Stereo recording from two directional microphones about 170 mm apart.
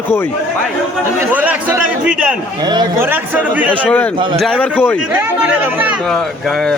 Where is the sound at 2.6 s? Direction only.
25° right (ahead or behind).